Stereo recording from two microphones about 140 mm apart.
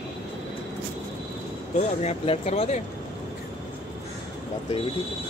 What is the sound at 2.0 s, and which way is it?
Speech, 55° left (ahead or behind).